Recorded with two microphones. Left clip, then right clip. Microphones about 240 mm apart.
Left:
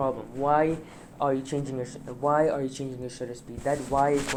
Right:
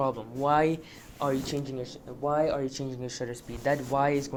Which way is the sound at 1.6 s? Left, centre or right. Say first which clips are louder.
Left 3 dB; centre.